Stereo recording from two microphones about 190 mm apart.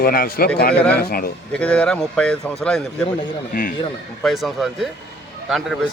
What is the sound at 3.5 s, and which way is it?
Speech, 50° left (ahead or behind).